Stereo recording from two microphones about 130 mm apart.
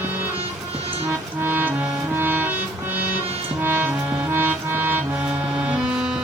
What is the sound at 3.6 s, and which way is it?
Music, 15° right (ahead or behind).